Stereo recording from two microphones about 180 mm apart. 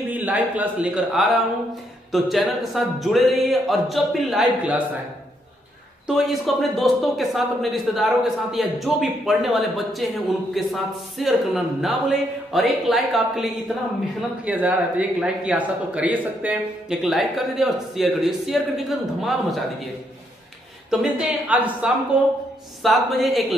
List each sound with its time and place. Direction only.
0.1 s a man's voice: 10° right (ahead or behind)
6.0 s a man's voice: centre (ahead or behind)
20.9 s a man's voice: 5° right (ahead or behind)